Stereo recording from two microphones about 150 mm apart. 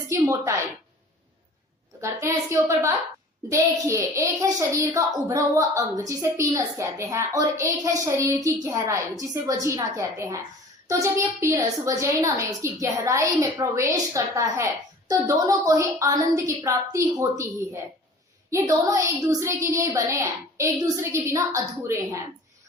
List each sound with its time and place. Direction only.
0.1 s a woman's voice: 20° right (ahead or behind)
2.0 s a child's voice: 20° right (ahead or behind)
18.5 s a child's voice: 20° right (ahead or behind)